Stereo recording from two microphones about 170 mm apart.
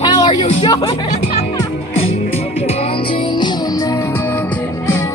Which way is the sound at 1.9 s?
40° left (ahead or behind).